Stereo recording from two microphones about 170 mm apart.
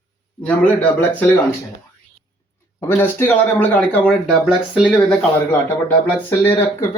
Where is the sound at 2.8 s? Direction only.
10° left (ahead or behind).